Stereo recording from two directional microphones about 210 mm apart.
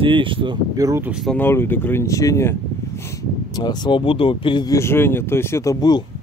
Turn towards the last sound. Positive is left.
turn(degrees=15)  # may be behind; listen again after turning